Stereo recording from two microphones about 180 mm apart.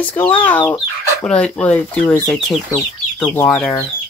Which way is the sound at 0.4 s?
10° left (ahead or behind).